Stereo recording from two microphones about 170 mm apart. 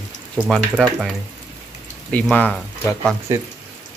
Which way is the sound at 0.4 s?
5° right (ahead or behind).